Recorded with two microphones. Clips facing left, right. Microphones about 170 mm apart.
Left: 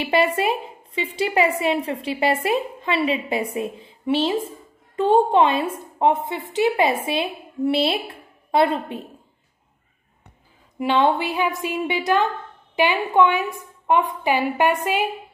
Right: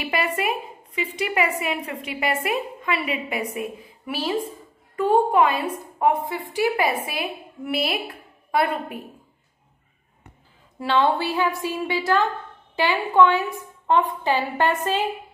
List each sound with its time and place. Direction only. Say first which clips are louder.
0.0 s a woman's voice: left 5 dB; 30° left (ahead or behind)
10.8 s a woman's voice: left 2 dB; 15° left (ahead or behind)